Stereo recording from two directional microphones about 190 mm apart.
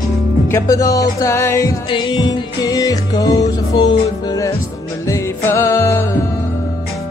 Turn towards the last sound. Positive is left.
turn(degrees=15)  # may be behind; listen again after turning